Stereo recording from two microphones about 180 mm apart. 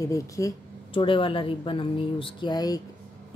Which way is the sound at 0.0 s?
15° left (ahead or behind).